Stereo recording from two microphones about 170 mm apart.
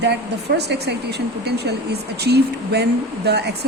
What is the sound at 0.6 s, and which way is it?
Speech, 75° right (ahead or behind).